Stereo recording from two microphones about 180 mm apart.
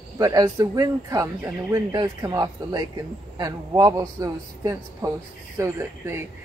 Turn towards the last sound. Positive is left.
turn(degrees=-15)  # may be behind; listen again after turning